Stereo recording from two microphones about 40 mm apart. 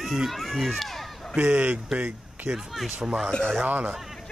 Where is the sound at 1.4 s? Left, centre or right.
Right.